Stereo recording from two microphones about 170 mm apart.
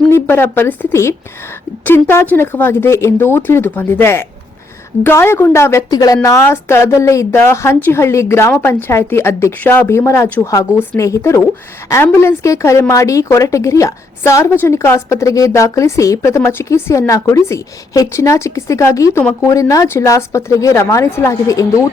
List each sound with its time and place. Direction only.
0.1 s a woman's voice: 15° left (ahead or behind)